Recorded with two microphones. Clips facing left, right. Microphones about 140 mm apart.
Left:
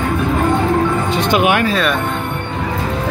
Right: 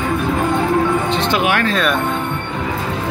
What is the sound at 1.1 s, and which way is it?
Music, 15° left (ahead or behind).